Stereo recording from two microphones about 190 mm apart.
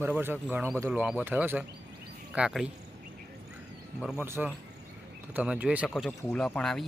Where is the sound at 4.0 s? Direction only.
5° right (ahead or behind).